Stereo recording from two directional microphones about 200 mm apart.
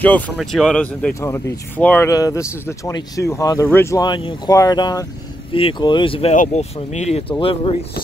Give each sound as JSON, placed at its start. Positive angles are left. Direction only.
{"t": 0.0, "sound": "speech", "side_deg": 5}
{"t": 6.3, "sound": "speech", "side_deg": 35}